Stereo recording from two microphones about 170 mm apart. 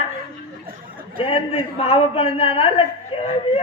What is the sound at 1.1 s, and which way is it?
A man's voice, 35° left (ahead or behind).